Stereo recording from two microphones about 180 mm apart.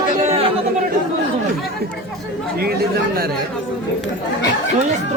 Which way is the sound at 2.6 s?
60° right (ahead or behind).